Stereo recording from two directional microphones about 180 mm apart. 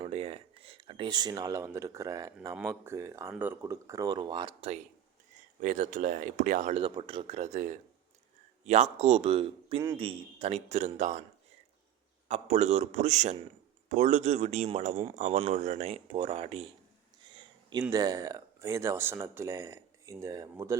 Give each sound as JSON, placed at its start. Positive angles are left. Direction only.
{"t": 0.0, "sound": "speech", "side_deg": -30}
{"t": 5.5, "sound": "speech", "side_deg": -45}
{"t": 6.8, "sound": "speech", "side_deg": -30}
{"t": 12.3, "sound": "speech", "side_deg": -40}
{"t": 17.3, "sound": "a sound", "side_deg": -25}
{"t": 17.9, "sound": "speech", "side_deg": -20}